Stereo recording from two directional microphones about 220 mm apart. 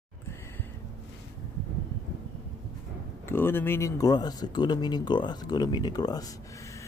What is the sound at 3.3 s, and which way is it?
Speech, 10° left (ahead or behind).